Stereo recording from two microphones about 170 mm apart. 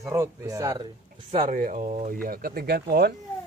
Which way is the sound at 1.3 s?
55° right (ahead or behind).